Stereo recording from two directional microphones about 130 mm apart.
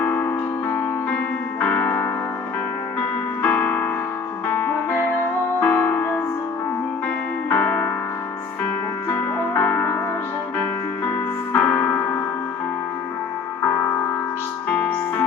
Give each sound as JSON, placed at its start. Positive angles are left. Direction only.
{"t": 0.0, "sound": "music", "side_deg": 15}
{"t": 7.5, "sound": "music", "side_deg": 10}
{"t": 9.6, "sound": "music", "side_deg": 15}
{"t": 11.5, "sound": "music", "side_deg": 10}
{"t": 13.6, "sound": "music", "side_deg": 20}
{"t": 14.7, "sound": "music", "side_deg": 10}